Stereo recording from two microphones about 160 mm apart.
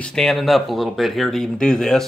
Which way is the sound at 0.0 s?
5° left (ahead or behind).